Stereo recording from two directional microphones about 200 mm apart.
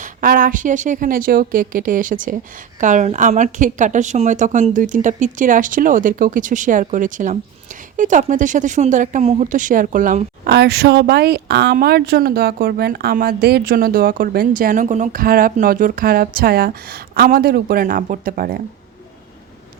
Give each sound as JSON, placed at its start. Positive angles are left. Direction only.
{"t": 0.0, "sound": "speech", "side_deg": -45}
{"t": 10.5, "sound": "speech", "side_deg": -55}